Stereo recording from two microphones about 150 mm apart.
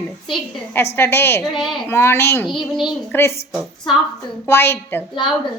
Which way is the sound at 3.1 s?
15° left (ahead or behind).